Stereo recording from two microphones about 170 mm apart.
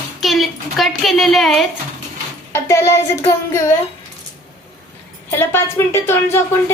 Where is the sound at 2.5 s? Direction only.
15° left (ahead or behind).